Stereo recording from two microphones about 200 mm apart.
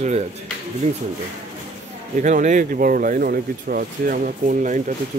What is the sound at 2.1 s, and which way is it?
Speech, 40° right (ahead or behind).